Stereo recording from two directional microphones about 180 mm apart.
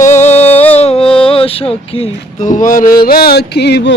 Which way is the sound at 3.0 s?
55° left (ahead or behind).